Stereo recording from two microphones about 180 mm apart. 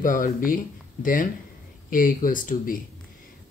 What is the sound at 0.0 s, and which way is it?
Speech, 50° left (ahead or behind).